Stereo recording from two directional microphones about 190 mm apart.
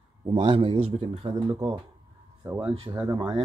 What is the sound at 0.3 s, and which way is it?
A man's voice, 25° right (ahead or behind).